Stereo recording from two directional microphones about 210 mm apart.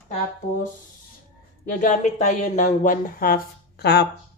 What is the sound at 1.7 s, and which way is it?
Speech, 35° left (ahead or behind).